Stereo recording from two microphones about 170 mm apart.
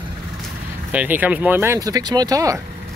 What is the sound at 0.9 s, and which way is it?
Speech, 10° right (ahead or behind).